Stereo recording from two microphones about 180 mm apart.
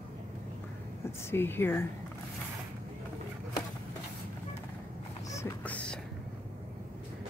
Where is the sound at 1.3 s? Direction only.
10° left (ahead or behind).